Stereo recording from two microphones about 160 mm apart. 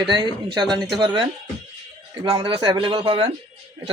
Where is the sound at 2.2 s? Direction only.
30° right (ahead or behind).